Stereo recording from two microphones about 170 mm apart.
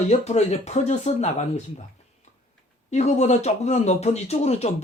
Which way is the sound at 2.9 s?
40° left (ahead or behind).